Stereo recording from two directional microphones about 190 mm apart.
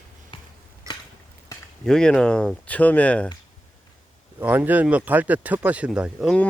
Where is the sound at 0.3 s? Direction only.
25° left (ahead or behind).